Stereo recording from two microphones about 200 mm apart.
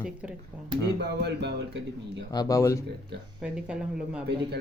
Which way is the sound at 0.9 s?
55° right (ahead or behind).